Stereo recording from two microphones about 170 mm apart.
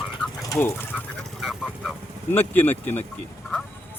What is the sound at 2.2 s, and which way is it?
Speech, 10° left (ahead or behind).